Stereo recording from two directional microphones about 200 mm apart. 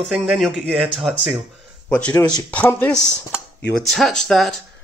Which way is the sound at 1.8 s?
10° left (ahead or behind).